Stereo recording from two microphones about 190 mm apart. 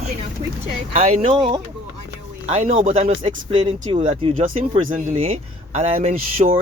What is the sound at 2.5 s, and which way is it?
Speech, 30° right (ahead or behind).